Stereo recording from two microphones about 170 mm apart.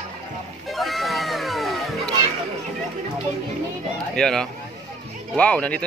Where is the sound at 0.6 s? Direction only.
Centre (ahead or behind).